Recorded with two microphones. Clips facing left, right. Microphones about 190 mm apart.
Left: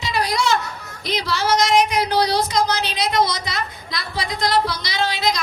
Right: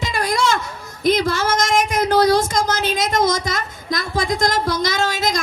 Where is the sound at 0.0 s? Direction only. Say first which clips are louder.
Right 2 dB; 50° right (ahead or behind).